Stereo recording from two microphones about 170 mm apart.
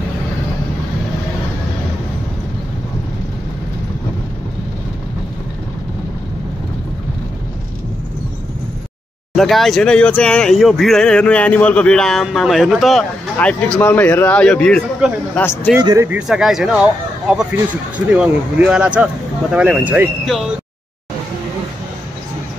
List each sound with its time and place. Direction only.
9.3 s speech: centre (ahead or behind)
15.8 s speech: 20° right (ahead or behind)
16.1 s speech: 5° right (ahead or behind)